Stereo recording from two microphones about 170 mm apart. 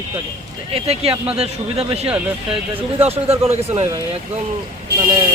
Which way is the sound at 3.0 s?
35° right (ahead or behind).